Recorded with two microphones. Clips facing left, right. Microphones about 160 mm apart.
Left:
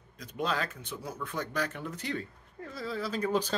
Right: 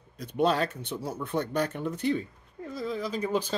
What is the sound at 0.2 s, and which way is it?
Speech, 30° right (ahead or behind).